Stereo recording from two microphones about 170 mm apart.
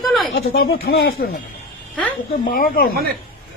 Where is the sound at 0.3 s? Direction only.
65° left (ahead or behind).